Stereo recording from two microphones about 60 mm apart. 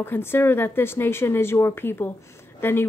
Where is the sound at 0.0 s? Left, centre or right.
Left.